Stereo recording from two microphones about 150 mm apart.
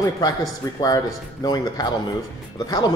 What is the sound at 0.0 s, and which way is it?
A man's voice, 25° left (ahead or behind).